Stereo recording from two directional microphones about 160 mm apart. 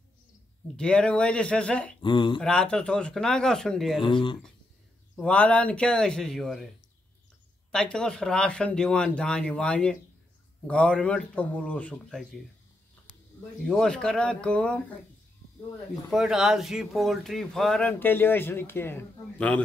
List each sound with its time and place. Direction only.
0.7 s speech: 5° left (ahead or behind)
2.0 s speech: 30° left (ahead or behind)
2.4 s speech: 5° left (ahead or behind)
4.0 s speech: 30° left (ahead or behind)
5.1 s speech: 5° left (ahead or behind)
7.7 s speech: 5° left (ahead or behind)
13.7 s speech: 5° left (ahead or behind)
16.1 s speech: centre (ahead or behind)